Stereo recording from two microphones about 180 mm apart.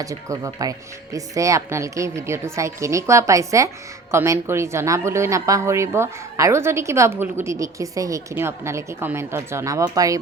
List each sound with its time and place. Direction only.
0.0 s a woman's voice: 20° right (ahead or behind)